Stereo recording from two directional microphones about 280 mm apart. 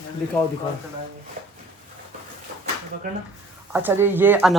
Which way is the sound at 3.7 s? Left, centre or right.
Centre.